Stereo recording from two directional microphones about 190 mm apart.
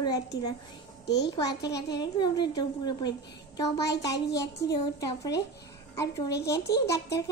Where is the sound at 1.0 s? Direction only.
60° left (ahead or behind).